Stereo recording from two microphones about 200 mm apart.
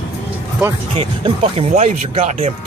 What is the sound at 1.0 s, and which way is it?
Speech, 30° right (ahead or behind).